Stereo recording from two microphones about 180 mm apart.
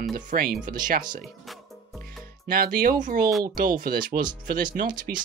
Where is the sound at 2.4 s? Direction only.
55° right (ahead or behind).